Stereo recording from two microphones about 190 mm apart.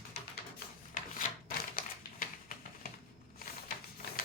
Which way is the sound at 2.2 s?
45° left (ahead or behind).